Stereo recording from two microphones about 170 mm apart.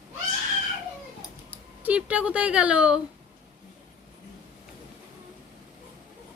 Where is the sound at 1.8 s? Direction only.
10° right (ahead or behind).